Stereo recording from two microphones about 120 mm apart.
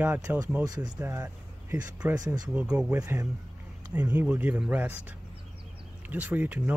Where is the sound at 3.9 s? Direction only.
10° right (ahead or behind).